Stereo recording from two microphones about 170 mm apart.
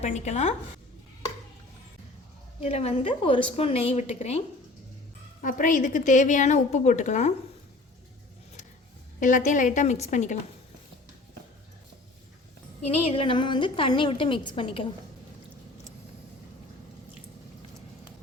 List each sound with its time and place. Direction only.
0.0 s a woman's voice: 40° left (ahead or behind)
2.6 s a woman's voice: 40° left (ahead or behind)
5.4 s a woman's voice: 50° left (ahead or behind)
9.2 s a woman's voice: 50° left (ahead or behind)
12.9 s a woman's voice: 35° left (ahead or behind)